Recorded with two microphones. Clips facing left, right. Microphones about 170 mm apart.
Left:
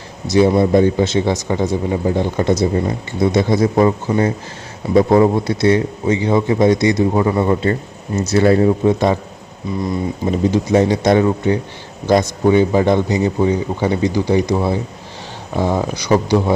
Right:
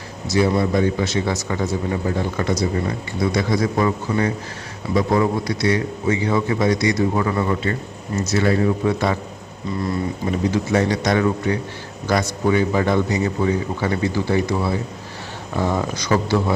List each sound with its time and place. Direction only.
0.3 s a man's voice: 20° left (ahead or behind)
10.3 s a man's voice: 20° left (ahead or behind)